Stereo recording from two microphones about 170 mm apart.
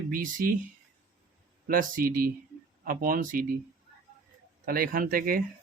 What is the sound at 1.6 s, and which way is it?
Speech, 55° right (ahead or behind).